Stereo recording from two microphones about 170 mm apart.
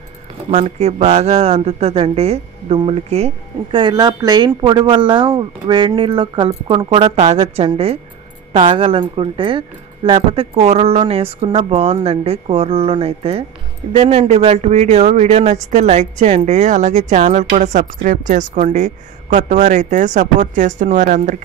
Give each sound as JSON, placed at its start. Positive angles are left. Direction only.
{"t": 0.5, "sound": "speech", "side_deg": -35}
{"t": 3.7, "sound": "speech", "side_deg": -25}